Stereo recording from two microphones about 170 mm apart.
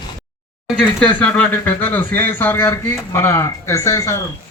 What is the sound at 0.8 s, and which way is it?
Speech, 10° left (ahead or behind).